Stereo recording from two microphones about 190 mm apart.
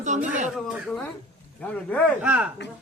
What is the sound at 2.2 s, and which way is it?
Speech, 5° right (ahead or behind).